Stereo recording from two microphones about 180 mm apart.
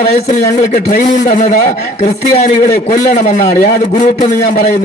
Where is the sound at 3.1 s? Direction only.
40° left (ahead or behind).